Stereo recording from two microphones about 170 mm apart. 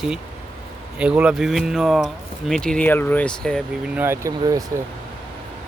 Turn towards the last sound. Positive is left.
turn(degrees=-20)  # may be behind; listen again after turning